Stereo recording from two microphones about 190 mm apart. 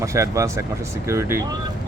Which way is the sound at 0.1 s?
15° right (ahead or behind).